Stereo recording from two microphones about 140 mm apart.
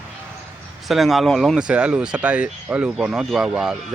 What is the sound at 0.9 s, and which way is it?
Speech, centre (ahead or behind).